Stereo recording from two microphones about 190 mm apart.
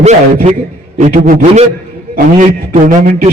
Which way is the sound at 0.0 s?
35° right (ahead or behind).